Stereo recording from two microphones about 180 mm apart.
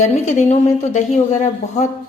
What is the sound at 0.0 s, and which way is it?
Speech, 40° left (ahead or behind).